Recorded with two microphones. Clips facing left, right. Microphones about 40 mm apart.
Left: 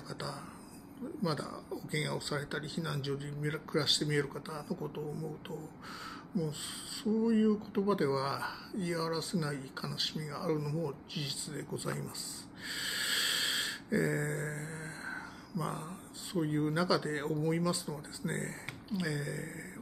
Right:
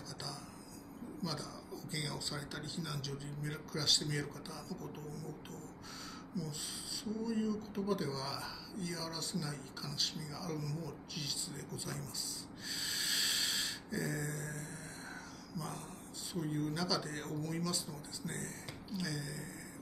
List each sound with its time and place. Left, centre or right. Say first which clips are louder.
1.2 s speech: left 7 dB; left
7.0 s speech: left 9 dB; left
12.6 s a sound: left 4 dB; left
16.3 s speech: left 6 dB; left